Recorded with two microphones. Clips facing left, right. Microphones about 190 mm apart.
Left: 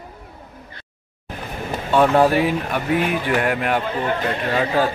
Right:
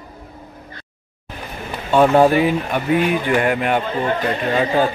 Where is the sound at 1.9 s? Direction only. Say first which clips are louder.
Right 3 dB; centre (ahead or behind).